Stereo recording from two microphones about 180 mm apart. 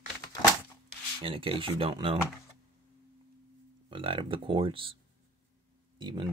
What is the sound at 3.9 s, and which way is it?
Speech, 30° right (ahead or behind).